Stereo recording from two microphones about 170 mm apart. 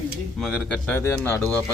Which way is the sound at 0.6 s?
10° left (ahead or behind).